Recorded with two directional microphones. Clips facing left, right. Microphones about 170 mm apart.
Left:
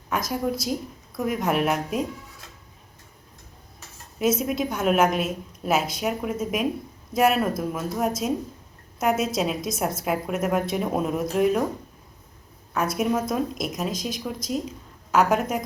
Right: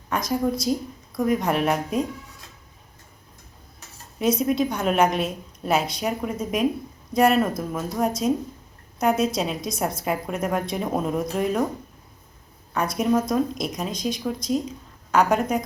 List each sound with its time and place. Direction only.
0.1 s a woman's voice: 5° left (ahead or behind)
4.2 s a woman's voice: 5° left (ahead or behind)
12.7 s a woman's voice: 5° left (ahead or behind)